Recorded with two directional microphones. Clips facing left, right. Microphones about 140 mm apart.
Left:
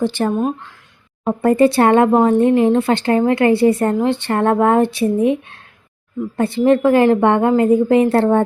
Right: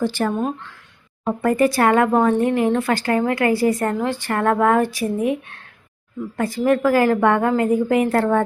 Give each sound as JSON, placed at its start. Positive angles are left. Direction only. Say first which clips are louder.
{"t": 0.0, "sound": "speech", "louder": "left 3 dB", "side_deg": 20}